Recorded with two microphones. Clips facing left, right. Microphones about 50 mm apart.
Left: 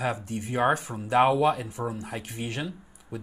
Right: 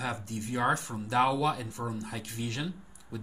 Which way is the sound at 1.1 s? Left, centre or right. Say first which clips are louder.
Left 6 dB; left.